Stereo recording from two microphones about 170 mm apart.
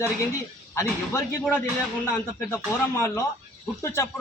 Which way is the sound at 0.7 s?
15° left (ahead or behind).